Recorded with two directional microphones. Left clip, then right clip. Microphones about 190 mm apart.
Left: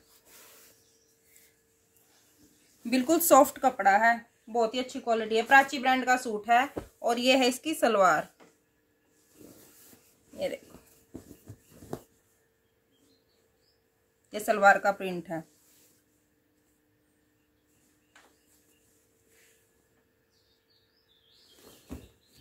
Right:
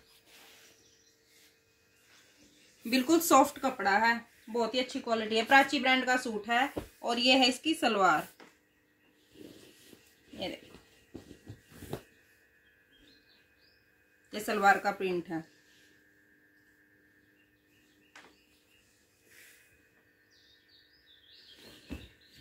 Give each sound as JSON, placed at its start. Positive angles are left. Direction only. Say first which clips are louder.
{"t": 2.8, "sound": "speech", "louder": "left 1 dB", "side_deg": 65}
{"t": 14.3, "sound": "speech", "louder": "left 4 dB", "side_deg": 40}